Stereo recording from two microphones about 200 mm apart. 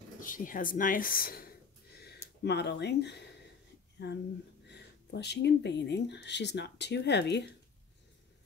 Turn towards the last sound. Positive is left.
turn(degrees=55)  # may be behind; listen again after turning